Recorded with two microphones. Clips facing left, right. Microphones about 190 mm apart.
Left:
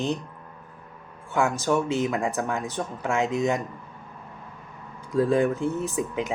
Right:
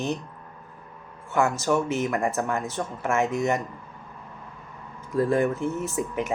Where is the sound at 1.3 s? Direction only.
15° left (ahead or behind).